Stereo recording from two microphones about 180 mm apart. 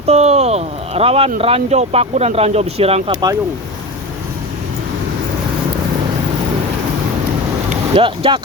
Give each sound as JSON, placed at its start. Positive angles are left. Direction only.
{"t": 0.0, "sound": "a sound", "side_deg": -35}
{"t": 1.4, "sound": "speech", "side_deg": -35}
{"t": 7.7, "sound": "speech", "side_deg": -30}